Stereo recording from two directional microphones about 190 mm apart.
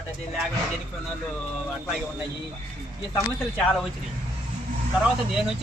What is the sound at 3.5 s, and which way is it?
Speech, 5° left (ahead or behind).